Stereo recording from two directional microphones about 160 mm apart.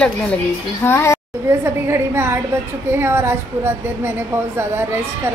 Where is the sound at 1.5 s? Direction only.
15° right (ahead or behind).